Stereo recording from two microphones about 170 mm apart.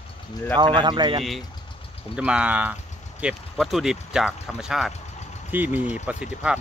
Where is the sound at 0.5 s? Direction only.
25° right (ahead or behind).